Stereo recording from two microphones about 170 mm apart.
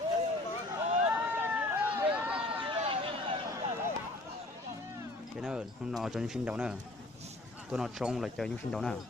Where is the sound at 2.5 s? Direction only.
30° right (ahead or behind).